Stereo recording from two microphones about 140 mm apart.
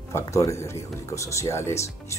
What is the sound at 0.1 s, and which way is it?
Speech, 25° left (ahead or behind).